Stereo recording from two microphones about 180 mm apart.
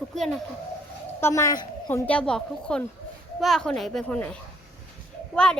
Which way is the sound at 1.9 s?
5° left (ahead or behind).